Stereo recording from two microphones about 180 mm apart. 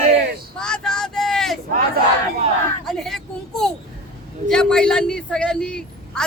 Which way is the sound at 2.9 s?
Centre (ahead or behind).